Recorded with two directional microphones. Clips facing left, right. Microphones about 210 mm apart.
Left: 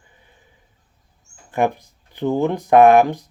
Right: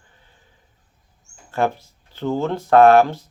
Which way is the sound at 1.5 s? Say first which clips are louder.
Left 2 dB; 15° left (ahead or behind).